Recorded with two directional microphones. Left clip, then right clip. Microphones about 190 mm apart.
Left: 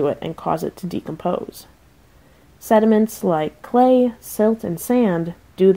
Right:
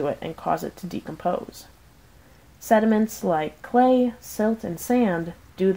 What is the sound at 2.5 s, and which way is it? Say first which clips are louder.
Speech: left 4 dB; 25° left (ahead or behind).